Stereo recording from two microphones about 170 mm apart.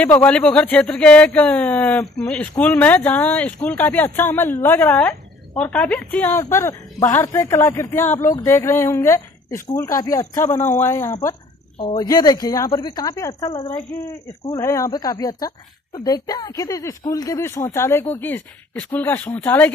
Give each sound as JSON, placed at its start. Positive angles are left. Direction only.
{"t": 0.2, "sound": "speech", "side_deg": 5}
{"t": 14.5, "sound": "speech", "side_deg": 15}